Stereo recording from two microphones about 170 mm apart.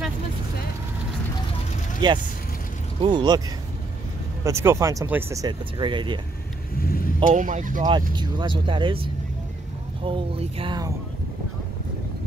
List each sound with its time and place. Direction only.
2.0 s speech: 25° right (ahead or behind)
4.5 s speech: 15° right (ahead or behind)
6.8 s speech: 60° left (ahead or behind)
7.2 s speech: 50° right (ahead or behind)
8.1 s speech: 25° right (ahead or behind)